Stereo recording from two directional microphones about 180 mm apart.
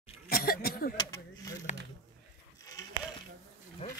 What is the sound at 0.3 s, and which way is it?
Cough, 55° left (ahead or behind).